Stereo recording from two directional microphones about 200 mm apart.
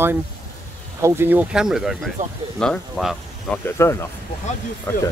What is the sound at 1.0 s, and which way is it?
Speech, 10° right (ahead or behind).